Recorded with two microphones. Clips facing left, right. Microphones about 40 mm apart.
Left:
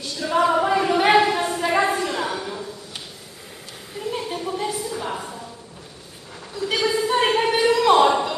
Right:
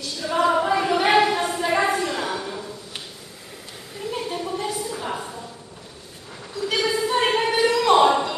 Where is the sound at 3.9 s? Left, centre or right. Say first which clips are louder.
Left 1 dB; centre.